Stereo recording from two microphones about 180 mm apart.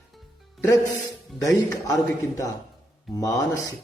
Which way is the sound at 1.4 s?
15° left (ahead or behind).